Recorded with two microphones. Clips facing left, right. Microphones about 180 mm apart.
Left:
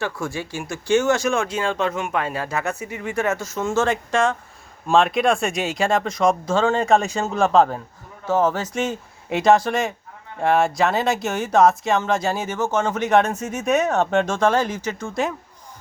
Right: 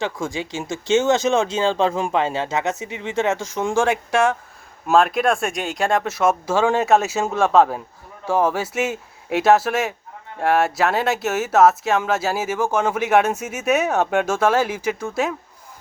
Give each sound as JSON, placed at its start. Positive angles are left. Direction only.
{"t": 0.0, "sound": "speech", "side_deg": -15}